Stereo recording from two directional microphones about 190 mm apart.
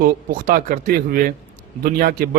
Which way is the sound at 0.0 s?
50° right (ahead or behind).